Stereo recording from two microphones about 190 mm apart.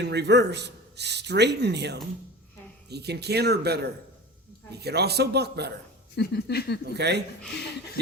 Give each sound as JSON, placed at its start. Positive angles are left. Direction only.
{"t": 0.0, "sound": "a man's voice", "side_deg": -60}
{"t": 6.1, "sound": "speech", "side_deg": 55}
{"t": 6.9, "sound": "a man's voice", "side_deg": -60}